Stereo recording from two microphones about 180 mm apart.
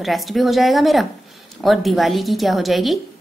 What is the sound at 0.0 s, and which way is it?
A woman's voice, centre (ahead or behind).